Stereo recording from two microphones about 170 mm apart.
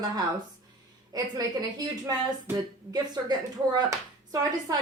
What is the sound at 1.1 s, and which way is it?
A woman's voice, 20° right (ahead or behind).